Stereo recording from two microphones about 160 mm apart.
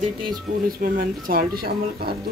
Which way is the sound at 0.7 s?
65° right (ahead or behind).